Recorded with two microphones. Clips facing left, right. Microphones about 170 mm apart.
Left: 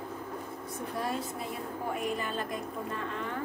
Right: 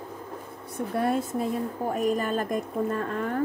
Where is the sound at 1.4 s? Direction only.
40° right (ahead or behind).